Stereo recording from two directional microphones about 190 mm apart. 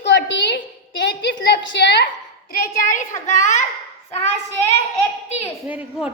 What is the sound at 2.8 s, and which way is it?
Speech, 45° left (ahead or behind).